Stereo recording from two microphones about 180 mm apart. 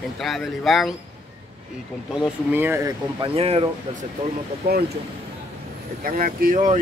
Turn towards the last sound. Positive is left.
turn(degrees=-50)  # may be behind; listen again after turning